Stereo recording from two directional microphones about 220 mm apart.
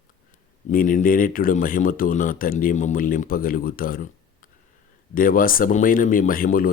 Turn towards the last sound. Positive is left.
turn(degrees=40)  # may be behind; listen again after turning